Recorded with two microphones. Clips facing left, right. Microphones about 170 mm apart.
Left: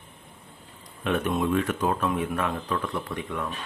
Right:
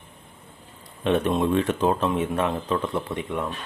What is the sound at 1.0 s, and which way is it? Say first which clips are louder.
Speech: right 4 dB; 25° right (ahead or behind).